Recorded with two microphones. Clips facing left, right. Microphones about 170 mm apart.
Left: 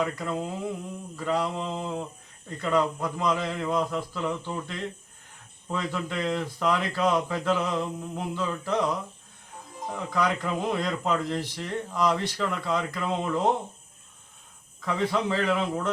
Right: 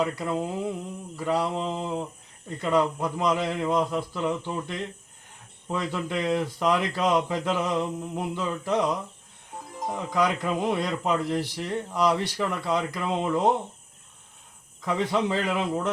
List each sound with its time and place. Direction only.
0.0 s speech: 10° right (ahead or behind)
14.8 s speech: 15° right (ahead or behind)